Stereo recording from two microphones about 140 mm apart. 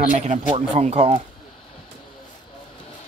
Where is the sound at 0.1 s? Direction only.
65° right (ahead or behind).